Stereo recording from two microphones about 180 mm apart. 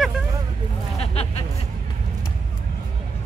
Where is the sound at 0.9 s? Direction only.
35° left (ahead or behind).